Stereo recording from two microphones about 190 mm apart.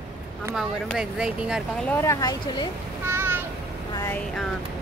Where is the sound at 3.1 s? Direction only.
10° right (ahead or behind).